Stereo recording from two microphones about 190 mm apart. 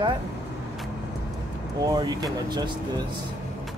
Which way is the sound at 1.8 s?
20° right (ahead or behind).